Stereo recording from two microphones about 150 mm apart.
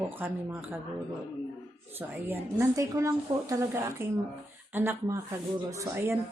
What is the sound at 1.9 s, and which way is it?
A woman's voice, 15° right (ahead or behind).